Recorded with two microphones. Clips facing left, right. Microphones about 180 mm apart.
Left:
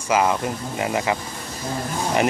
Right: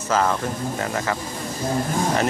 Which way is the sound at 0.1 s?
10° left (ahead or behind).